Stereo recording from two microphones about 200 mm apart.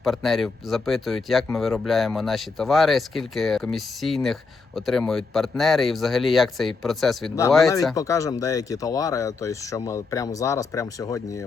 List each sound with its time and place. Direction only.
0.0 s speech: centre (ahead or behind)
7.9 s speech: 15° left (ahead or behind)